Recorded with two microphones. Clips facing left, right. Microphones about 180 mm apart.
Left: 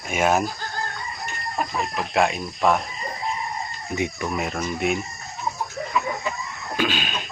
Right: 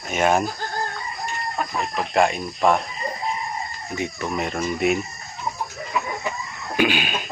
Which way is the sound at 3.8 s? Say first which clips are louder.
Left 2 dB; 20° left (ahead or behind).